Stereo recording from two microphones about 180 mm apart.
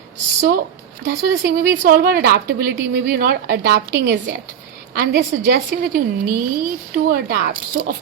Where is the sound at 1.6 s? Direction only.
55° right (ahead or behind).